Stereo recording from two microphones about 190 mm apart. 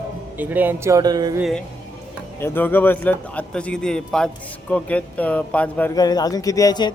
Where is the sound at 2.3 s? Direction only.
10° left (ahead or behind).